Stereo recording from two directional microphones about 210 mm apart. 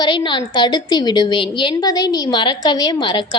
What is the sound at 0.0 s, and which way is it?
A woman's voice, 20° left (ahead or behind).